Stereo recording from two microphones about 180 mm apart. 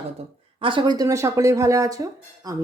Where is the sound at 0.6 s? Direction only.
25° right (ahead or behind).